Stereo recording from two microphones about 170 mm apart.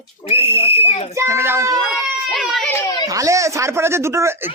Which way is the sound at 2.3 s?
Centre (ahead or behind).